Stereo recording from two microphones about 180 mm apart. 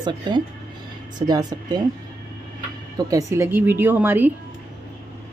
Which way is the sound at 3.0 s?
20° right (ahead or behind).